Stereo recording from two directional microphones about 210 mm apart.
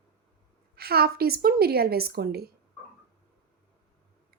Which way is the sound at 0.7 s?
50° right (ahead or behind).